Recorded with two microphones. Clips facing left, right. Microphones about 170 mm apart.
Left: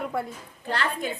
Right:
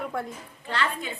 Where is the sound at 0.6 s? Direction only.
40° left (ahead or behind).